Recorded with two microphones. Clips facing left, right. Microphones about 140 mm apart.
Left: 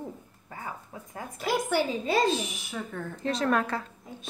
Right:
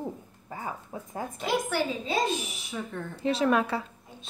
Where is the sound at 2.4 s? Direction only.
Centre (ahead or behind).